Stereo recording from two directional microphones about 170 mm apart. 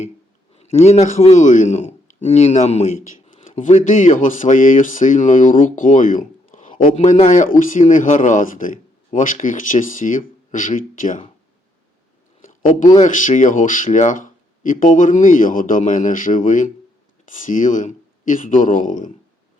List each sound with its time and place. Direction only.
0.5 s a man's voice: 40° left (ahead or behind)
13.0 s speech: 50° left (ahead or behind)